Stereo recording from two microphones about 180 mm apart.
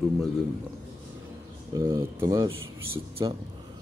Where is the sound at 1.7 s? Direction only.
20° right (ahead or behind).